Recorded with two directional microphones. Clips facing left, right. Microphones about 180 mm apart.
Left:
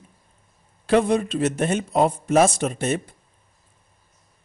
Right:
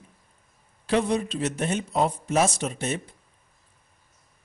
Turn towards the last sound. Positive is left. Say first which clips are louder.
# left 5 dB
turn(degrees=55)  # may be behind; listen again after turning